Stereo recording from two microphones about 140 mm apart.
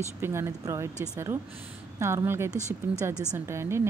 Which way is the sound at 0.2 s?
20° right (ahead or behind).